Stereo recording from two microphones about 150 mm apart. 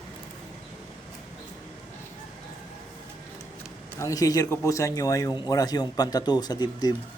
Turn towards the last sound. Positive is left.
turn(degrees=25)  # may be behind; listen again after turning